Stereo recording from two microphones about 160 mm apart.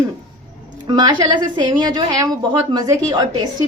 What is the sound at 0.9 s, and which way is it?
A woman's voice, 25° right (ahead or behind).